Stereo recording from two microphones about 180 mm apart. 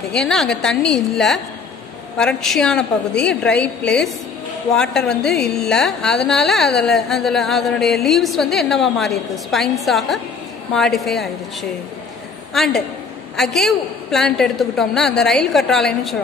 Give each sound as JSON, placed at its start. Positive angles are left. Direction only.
{"t": 0.1, "sound": "speech", "side_deg": 0}
{"t": 12.5, "sound": "speech", "side_deg": 0}